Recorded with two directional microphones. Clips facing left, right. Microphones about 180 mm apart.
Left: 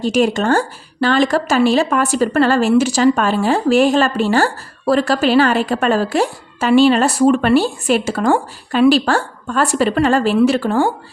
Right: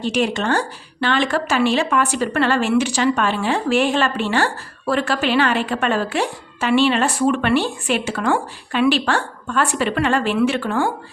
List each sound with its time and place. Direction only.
0.0 s speech: 45° left (ahead or behind)